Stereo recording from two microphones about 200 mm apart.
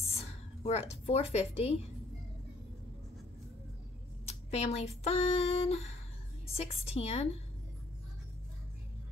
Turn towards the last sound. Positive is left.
turn(degrees=30)  # may be behind; listen again after turning